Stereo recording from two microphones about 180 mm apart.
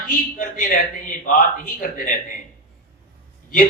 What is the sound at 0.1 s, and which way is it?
A man's voice, 50° left (ahead or behind).